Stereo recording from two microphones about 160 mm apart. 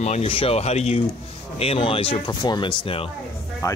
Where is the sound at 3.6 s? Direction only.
20° left (ahead or behind).